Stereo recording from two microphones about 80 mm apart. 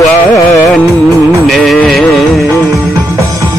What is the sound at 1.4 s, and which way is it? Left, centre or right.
Music, centre.